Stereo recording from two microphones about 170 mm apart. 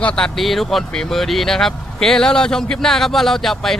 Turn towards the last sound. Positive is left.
turn(degrees=0)  # may be behind; listen again after turning